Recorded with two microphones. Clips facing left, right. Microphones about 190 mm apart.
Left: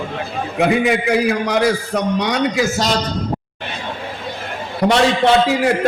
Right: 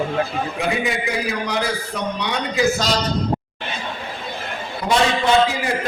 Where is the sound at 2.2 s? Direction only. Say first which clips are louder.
Left 6 dB; 75° left (ahead or behind).